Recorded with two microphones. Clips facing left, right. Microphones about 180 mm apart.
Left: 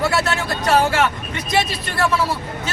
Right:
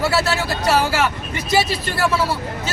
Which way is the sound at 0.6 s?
5° right (ahead or behind).